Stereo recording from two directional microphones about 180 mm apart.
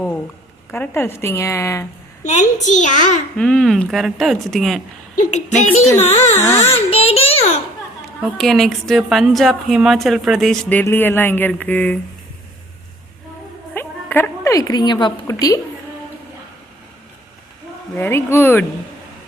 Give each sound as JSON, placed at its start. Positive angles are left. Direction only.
{"t": 0.7, "sound": "a woman's voice", "side_deg": 10}
{"t": 2.2, "sound": "a child's voice", "side_deg": 40}
{"t": 3.3, "sound": "a woman's voice", "side_deg": 5}
{"t": 5.3, "sound": "a child's voice", "side_deg": 40}
{"t": 8.2, "sound": "a woman's voice", "side_deg": 0}
{"t": 13.7, "sound": "a sound", "side_deg": 10}
{"t": 17.9, "sound": "a woman's voice", "side_deg": 15}